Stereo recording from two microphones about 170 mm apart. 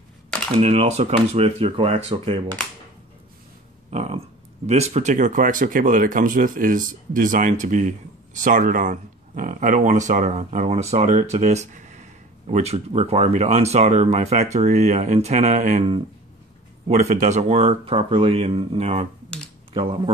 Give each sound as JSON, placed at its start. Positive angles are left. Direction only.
{"t": 0.6, "sound": "speech", "side_deg": -40}
{"t": 3.9, "sound": "a sound", "side_deg": -40}
{"t": 4.6, "sound": "speech", "side_deg": -40}
{"t": 16.8, "sound": "speech", "side_deg": -40}